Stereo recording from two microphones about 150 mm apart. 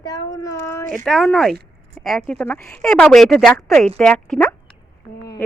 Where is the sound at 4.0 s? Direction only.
5° left (ahead or behind).